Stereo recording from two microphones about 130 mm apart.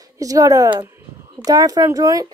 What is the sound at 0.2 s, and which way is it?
Speech, 25° right (ahead or behind).